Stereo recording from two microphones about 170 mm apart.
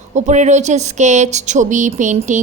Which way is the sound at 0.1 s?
45° right (ahead or behind).